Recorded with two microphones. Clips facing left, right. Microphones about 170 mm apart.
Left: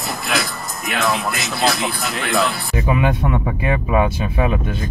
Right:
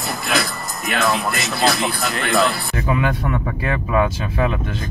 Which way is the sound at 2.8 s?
20° left (ahead or behind).